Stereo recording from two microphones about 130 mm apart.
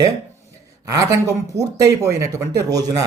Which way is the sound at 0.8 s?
25° right (ahead or behind).